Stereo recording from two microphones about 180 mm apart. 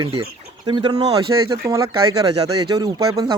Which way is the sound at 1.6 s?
15° right (ahead or behind).